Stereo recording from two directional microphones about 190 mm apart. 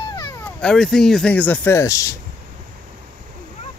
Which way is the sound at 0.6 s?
5° left (ahead or behind).